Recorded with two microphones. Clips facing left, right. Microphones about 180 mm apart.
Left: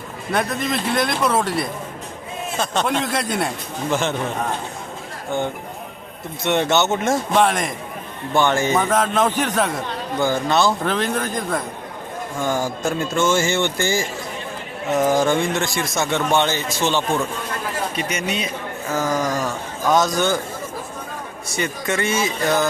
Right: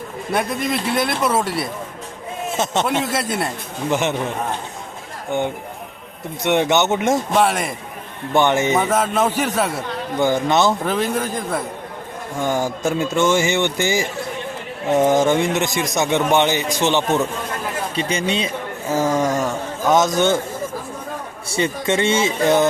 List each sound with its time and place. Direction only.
0.3 s a man's voice: 10° right (ahead or behind)
2.8 s speech: 5° right (ahead or behind)
6.4 s a man's voice: 15° right (ahead or behind)
7.3 s speech: 5° right (ahead or behind)
8.3 s a man's voice: 20° right (ahead or behind)
8.7 s a man's voice: 10° right (ahead or behind)
10.2 s a man's voice: 20° right (ahead or behind)
10.8 s a man's voice: 10° right (ahead or behind)
21.5 s a man's voice: 25° right (ahead or behind)